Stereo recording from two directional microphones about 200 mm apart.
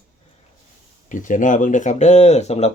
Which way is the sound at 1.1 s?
40° left (ahead or behind).